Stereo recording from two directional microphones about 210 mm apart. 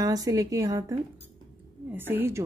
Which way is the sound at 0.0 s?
15° right (ahead or behind).